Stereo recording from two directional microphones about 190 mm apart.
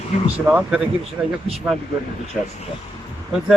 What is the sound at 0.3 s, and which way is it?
Speech, 5° right (ahead or behind).